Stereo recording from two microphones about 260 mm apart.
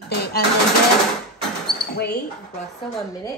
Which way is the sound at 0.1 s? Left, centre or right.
Left.